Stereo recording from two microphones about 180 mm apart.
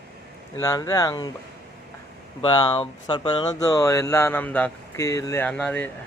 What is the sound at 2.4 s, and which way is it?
Speech, 25° left (ahead or behind).